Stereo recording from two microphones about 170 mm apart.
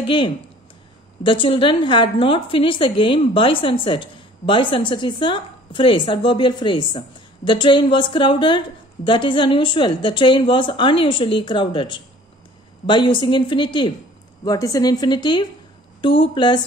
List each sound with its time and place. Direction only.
0.0 s a woman's voice: 30° left (ahead or behind)